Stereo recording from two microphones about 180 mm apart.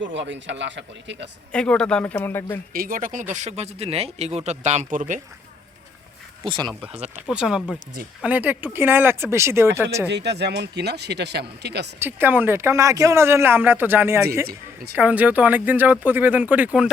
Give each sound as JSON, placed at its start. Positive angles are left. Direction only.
{"t": 0.0, "sound": "speech", "side_deg": -90}
{"t": 1.5, "sound": "speech", "side_deg": 5}
{"t": 2.7, "sound": "speech", "side_deg": -50}
{"t": 6.4, "sound": "speech", "side_deg": -25}
{"t": 7.3, "sound": "speech", "side_deg": -5}
{"t": 10.1, "sound": "speech", "side_deg": -70}
{"t": 11.9, "sound": "speech", "side_deg": -10}
{"t": 14.4, "sound": "a woman's voice", "side_deg": -60}
{"t": 14.9, "sound": "speech", "side_deg": -10}